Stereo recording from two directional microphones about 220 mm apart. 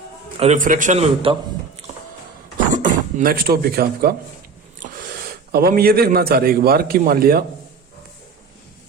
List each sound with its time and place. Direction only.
0.3 s a man's voice: 30° right (ahead or behind)
2.7 s speech: 35° right (ahead or behind)
4.8 s a sound: 35° right (ahead or behind)
5.5 s a man's voice: 45° right (ahead or behind)